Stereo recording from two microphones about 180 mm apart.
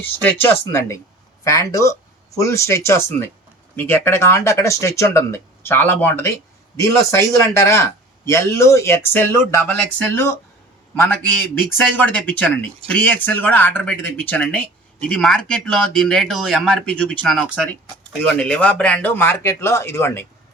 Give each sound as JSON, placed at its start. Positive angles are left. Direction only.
{"t": 0.0, "sound": "a man's voice", "side_deg": 10}